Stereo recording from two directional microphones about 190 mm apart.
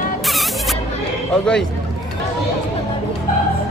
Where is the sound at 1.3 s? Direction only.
5° left (ahead or behind).